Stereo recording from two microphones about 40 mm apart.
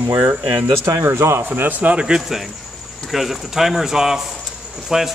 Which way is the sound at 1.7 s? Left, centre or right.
Right.